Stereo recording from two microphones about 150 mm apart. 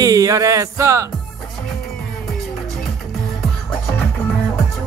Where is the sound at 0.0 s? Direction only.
25° right (ahead or behind).